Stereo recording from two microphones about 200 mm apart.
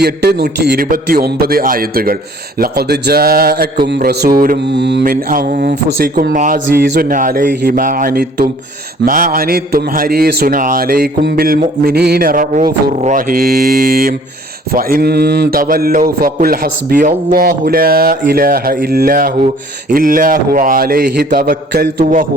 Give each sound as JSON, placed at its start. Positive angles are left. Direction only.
{"t": 0.0, "sound": "a man's voice", "side_deg": -55}
{"t": 5.3, "sound": "a man's voice", "side_deg": -45}